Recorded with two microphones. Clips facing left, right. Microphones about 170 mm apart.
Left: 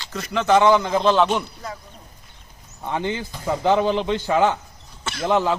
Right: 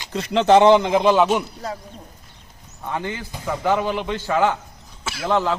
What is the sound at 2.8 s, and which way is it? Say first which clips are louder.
A man's voice: left 2 dB; 20° left (ahead or behind).